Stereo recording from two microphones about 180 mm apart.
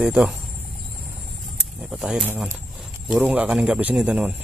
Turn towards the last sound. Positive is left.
turn(degrees=-5)  # may be behind; listen again after turning